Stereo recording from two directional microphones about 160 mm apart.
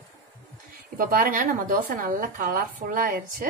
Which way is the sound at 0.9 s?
60° right (ahead or behind).